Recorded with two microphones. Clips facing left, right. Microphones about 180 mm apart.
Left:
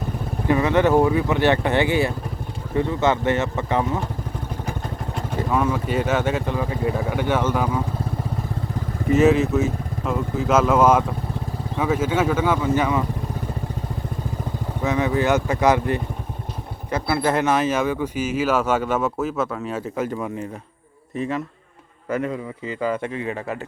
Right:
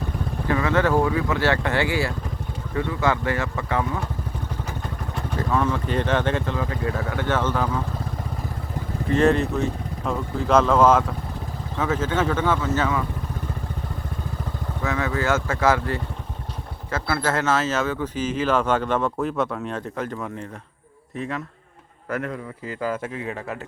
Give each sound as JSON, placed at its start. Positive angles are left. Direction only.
{"t": 0.4, "sound": "speech", "side_deg": 20}
{"t": 5.4, "sound": "speech", "side_deg": 10}
{"t": 9.0, "sound": "speech", "side_deg": 5}
{"t": 14.8, "sound": "speech", "side_deg": 20}